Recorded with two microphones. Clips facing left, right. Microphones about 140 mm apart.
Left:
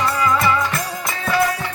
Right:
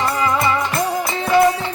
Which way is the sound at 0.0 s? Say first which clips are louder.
Even; 25° right (ahead or behind).